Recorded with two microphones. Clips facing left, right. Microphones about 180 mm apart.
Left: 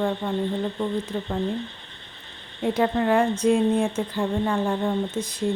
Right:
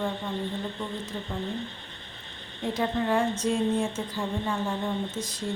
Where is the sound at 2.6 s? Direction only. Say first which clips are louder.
Left 6 dB; 60° left (ahead or behind).